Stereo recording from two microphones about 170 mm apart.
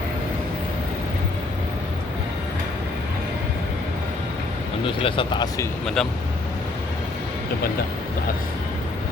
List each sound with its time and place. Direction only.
4.9 s speech: 30° left (ahead or behind)
5.8 s speech: 5° left (ahead or behind)